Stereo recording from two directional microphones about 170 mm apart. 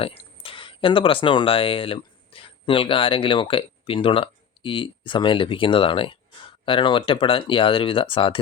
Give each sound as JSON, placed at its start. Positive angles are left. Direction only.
{"t": 0.0, "sound": "speech", "side_deg": 30}